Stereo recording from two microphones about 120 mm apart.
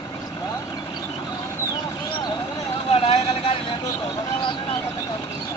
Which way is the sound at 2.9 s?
55° left (ahead or behind).